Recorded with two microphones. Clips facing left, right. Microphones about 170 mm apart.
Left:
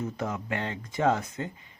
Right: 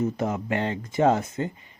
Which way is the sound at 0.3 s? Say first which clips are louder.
Right 5 dB; 45° right (ahead or behind).